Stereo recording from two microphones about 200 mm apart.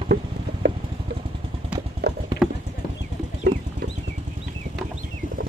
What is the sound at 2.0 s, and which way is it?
Clip-clop, 55° right (ahead or behind).